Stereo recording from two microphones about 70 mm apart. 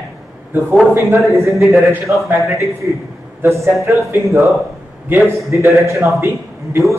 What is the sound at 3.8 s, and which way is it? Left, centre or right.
Speech, right.